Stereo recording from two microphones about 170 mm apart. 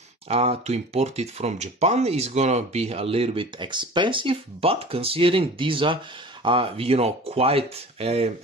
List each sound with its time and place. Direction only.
0.3 s speech: 35° right (ahead or behind)